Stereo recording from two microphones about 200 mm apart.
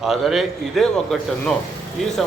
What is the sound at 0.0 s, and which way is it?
Speech, centre (ahead or behind).